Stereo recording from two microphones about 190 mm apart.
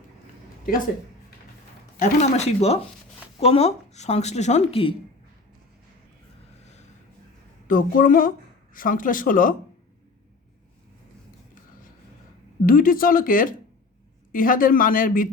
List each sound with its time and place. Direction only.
2.0 s speech: 35° left (ahead or behind)
7.7 s speech: 45° left (ahead or behind)
12.6 s speech: 45° left (ahead or behind)